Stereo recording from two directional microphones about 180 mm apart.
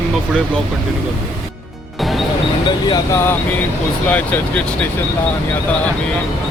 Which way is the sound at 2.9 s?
15° left (ahead or behind).